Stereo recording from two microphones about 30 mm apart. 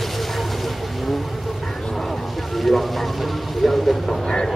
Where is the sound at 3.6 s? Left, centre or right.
Centre.